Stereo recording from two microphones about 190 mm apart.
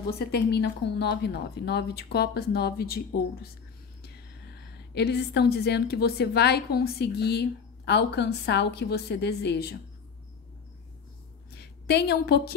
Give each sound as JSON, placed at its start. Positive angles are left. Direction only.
{"t": 0.3, "sound": "a woman's voice", "side_deg": 60}
{"t": 4.0, "sound": "a woman's voice", "side_deg": 60}
{"t": 11.5, "sound": "a woman's voice", "side_deg": 60}